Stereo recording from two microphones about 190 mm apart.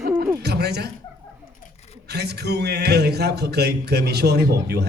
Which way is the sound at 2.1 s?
60° right (ahead or behind).